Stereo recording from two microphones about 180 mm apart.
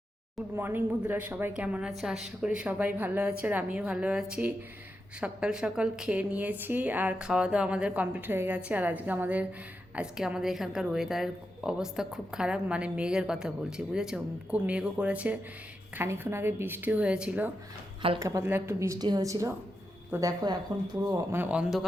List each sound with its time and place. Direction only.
0.5 s a woman's voice: 10° right (ahead or behind)
18.2 s a woman's voice: 20° right (ahead or behind)